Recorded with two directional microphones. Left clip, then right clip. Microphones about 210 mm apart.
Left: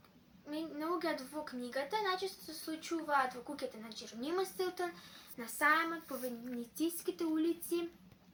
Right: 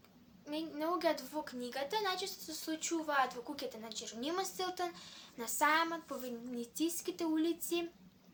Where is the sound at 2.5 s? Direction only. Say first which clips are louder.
Right 2 dB; 50° right (ahead or behind).